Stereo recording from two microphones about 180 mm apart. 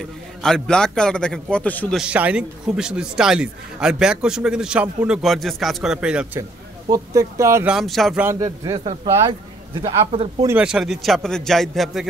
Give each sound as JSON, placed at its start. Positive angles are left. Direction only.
{"t": 0.0, "sound": "a man's voice", "side_deg": 5}
{"t": 2.0, "sound": "a man's voice", "side_deg": -5}
{"t": 6.9, "sound": "speech", "side_deg": -15}
{"t": 7.7, "sound": "speech", "side_deg": 0}
{"t": 10.6, "sound": "a man's voice", "side_deg": -5}